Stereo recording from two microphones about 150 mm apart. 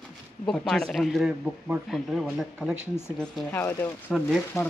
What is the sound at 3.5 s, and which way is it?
Speech, 15° left (ahead or behind).